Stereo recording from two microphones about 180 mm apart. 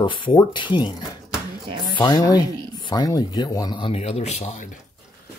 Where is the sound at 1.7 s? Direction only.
25° right (ahead or behind).